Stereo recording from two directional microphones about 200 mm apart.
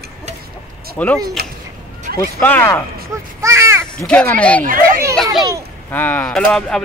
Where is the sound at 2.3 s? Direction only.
10° left (ahead or behind).